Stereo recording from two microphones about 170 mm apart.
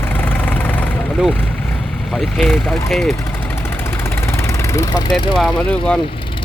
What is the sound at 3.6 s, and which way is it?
Vehicle, 15° left (ahead or behind).